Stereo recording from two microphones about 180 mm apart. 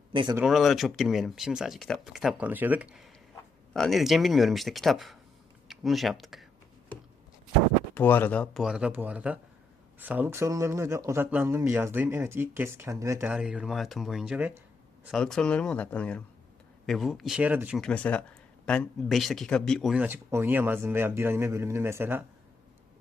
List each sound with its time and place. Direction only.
0.1 s speech: 25° right (ahead or behind)
0.4 s speech: centre (ahead or behind)
7.9 s speech: 10° left (ahead or behind)
8.6 s speech: 5° right (ahead or behind)
15.0 s speech: centre (ahead or behind)
17.7 s speech: 5° left (ahead or behind)
19.9 s speech: 10° right (ahead or behind)